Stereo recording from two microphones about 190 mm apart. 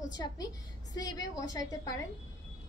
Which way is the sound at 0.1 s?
20° left (ahead or behind).